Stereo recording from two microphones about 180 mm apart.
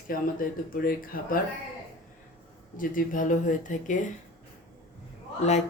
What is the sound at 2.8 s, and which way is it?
Speech, 50° left (ahead or behind).